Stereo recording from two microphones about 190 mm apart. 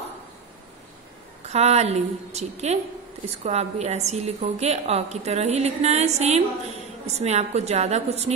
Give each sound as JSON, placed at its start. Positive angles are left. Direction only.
{"t": 1.5, "sound": "a woman's voice", "side_deg": -35}